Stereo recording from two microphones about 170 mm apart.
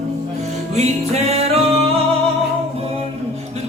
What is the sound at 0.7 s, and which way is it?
Music, 40° right (ahead or behind).